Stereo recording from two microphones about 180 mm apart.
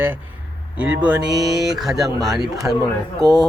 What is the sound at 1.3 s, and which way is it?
Speech, 20° right (ahead or behind).